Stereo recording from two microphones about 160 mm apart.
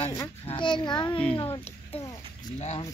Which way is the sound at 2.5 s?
45° left (ahead or behind).